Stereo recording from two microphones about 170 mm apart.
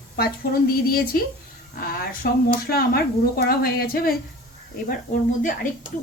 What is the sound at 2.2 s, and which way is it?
Speech, 65° left (ahead or behind).